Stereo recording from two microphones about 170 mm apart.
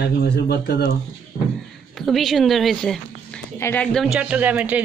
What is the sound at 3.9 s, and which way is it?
Speech, 5° right (ahead or behind).